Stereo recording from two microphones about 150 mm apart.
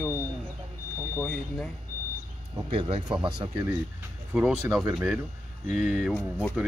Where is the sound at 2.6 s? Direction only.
35° right (ahead or behind).